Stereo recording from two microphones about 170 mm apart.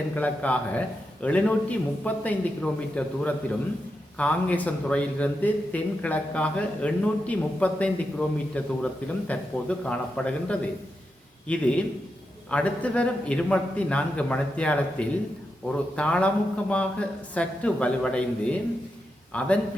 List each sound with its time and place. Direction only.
0.2 s a man's voice: 10° left (ahead or behind)